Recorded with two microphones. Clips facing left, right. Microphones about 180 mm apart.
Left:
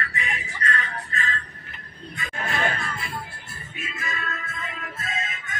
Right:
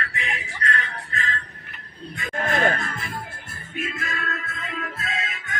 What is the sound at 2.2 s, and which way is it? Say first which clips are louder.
Music: right 5 dB; 50° right (ahead or behind).